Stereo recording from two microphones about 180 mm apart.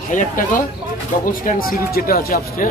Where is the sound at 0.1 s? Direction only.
45° left (ahead or behind).